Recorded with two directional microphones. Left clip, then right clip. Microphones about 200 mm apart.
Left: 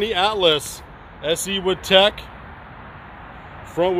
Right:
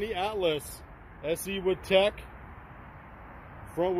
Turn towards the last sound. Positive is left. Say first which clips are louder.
# left 9 dB
turn(degrees=0)  # may be behind; listen again after turning